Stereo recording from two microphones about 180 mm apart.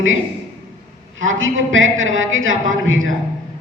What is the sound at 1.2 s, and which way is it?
Speech, 90° right.